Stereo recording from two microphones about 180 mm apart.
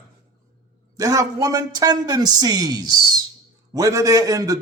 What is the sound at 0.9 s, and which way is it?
A man's voice, 20° right (ahead or behind).